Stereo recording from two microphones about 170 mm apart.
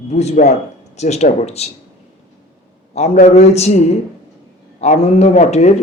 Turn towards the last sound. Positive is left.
turn(degrees=40)  # may be behind; listen again after turning